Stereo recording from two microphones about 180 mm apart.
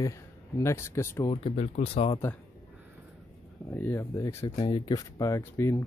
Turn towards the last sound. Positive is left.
turn(degrees=15)  # may be behind; listen again after turning